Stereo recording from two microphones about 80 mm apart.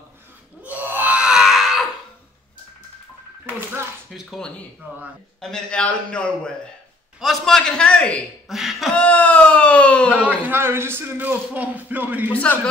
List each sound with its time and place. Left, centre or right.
0.6 s a sound: centre
4.1 s speech: centre
5.4 s a man's voice: centre
7.2 s a man's voice: centre
8.5 s a sound: centre
8.9 s speech: centre
10.5 s a man's voice: right
12.3 s a man's voice: centre